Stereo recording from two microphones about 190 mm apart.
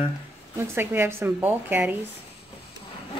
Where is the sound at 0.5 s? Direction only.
10° right (ahead or behind).